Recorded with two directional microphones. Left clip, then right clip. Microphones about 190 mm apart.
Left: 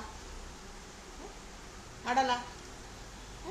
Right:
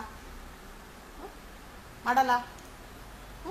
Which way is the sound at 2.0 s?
15° right (ahead or behind).